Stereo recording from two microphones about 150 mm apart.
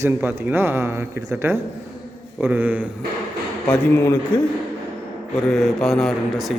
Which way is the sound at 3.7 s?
15° left (ahead or behind).